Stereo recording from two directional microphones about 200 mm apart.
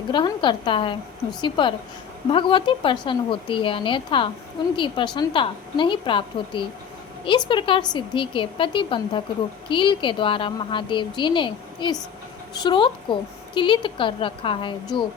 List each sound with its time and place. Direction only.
0.1 s a woman's voice: 25° left (ahead or behind)